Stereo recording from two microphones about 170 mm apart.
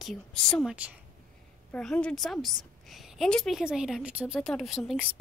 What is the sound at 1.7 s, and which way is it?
A woman's voice, 5° left (ahead or behind).